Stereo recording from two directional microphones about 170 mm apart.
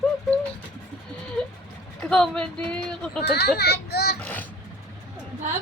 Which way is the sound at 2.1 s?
5° left (ahead or behind).